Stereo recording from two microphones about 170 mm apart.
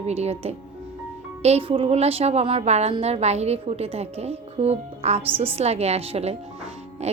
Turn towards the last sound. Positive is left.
turn(degrees=-40)  # may be behind; listen again after turning